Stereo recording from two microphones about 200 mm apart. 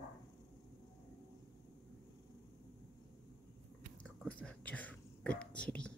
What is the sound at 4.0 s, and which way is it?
Whispering, 5° left (ahead or behind).